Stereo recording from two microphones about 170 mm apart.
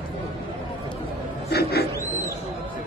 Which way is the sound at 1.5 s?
70° left (ahead or behind).